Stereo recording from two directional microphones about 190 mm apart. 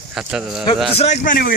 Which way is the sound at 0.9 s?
35° left (ahead or behind).